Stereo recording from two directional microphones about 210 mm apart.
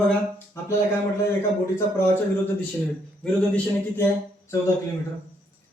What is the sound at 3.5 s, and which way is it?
A man's voice, 10° left (ahead or behind).